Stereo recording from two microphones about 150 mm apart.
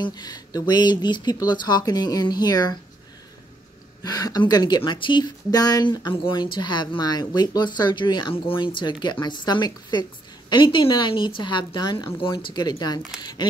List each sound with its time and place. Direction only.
0.0 s speech: 30° left (ahead or behind)
4.0 s a woman's voice: 25° left (ahead or behind)